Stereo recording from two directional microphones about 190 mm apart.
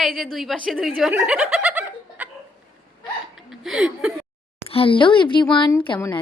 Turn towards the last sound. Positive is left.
turn(degrees=25)  # may be behind; listen again after turning